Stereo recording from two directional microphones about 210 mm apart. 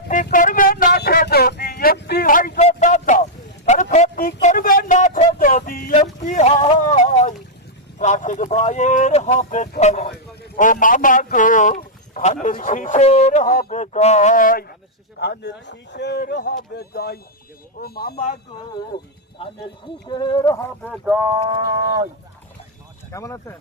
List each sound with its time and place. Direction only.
0.1 s a sound: 40° left (ahead or behind)
7.1 s boat: 35° left (ahead or behind)
7.9 s speech: 35° left (ahead or behind)
10.1 s a man's voice: 45° left (ahead or behind)
15.2 s a sound: 50° left (ahead or behind)
17.7 s speech: 45° left (ahead or behind)
19.8 s speech: 20° left (ahead or behind)
20.9 s speech: 5° right (ahead or behind)
21.2 s speech: 20° right (ahead or behind)
23.1 s speech: 15° left (ahead or behind)